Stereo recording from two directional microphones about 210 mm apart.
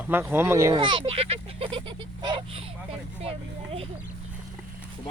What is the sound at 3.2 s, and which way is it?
Vehicle, 30° right (ahead or behind).